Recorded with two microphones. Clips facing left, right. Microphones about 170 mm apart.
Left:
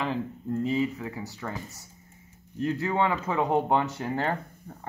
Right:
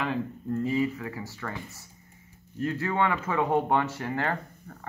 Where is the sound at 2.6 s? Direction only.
20° left (ahead or behind).